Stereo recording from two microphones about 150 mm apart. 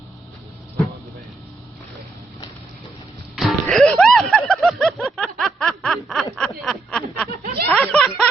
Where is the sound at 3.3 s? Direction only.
Centre (ahead or behind).